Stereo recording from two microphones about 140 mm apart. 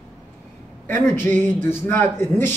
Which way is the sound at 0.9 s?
15° left (ahead or behind).